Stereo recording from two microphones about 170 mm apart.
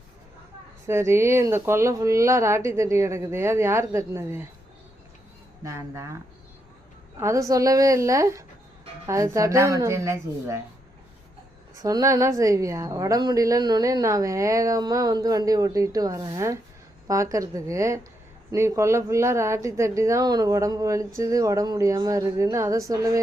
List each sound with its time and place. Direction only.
0.9 s a woman's voice: 15° right (ahead or behind)
5.6 s a woman's voice: 15° right (ahead or behind)
7.2 s a woman's voice: 20° right (ahead or behind)
11.8 s a woman's voice: 20° right (ahead or behind)